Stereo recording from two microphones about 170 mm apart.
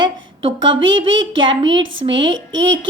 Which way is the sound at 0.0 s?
30° right (ahead or behind).